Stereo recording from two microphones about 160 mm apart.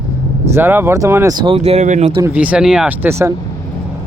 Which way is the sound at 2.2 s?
10° right (ahead or behind).